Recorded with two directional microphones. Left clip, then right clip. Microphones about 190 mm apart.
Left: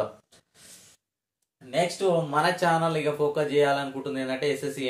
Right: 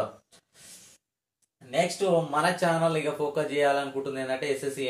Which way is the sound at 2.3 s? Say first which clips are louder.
Left 2 dB; 25° left (ahead or behind).